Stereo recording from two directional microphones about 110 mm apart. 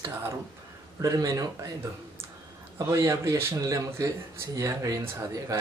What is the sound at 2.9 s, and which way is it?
Speech, 30° right (ahead or behind).